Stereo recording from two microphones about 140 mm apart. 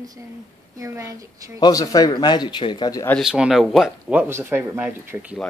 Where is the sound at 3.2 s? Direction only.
5° right (ahead or behind).